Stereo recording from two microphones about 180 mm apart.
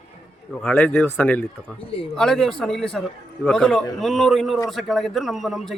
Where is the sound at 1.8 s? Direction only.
30° left (ahead or behind).